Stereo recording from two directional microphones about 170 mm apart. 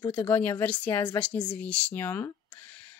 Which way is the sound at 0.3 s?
10° left (ahead or behind).